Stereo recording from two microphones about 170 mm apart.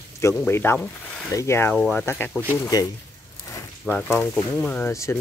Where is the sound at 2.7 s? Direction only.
20° left (ahead or behind).